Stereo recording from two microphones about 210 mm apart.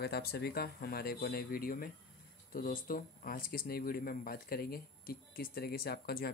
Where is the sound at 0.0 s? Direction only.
50° left (ahead or behind).